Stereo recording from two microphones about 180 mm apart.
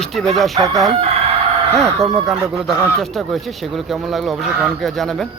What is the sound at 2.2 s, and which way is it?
Speech, centre (ahead or behind).